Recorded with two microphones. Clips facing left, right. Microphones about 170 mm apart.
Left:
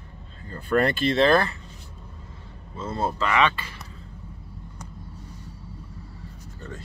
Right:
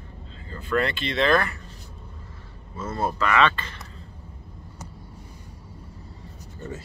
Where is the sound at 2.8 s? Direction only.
25° left (ahead or behind).